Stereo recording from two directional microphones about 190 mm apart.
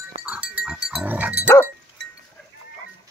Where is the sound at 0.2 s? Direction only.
5° right (ahead or behind).